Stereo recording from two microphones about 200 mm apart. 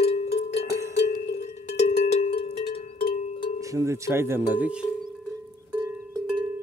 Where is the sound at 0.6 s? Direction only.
15° right (ahead or behind).